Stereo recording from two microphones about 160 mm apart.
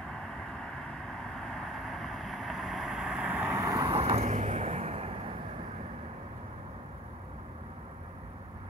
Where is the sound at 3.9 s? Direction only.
40° right (ahead or behind).